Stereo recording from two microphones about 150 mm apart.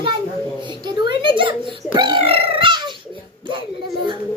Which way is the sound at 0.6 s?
30° right (ahead or behind).